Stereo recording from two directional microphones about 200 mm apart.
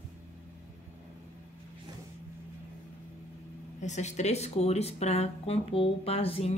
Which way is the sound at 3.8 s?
35° left (ahead or behind).